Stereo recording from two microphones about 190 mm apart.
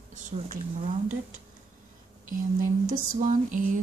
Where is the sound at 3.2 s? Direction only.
40° right (ahead or behind).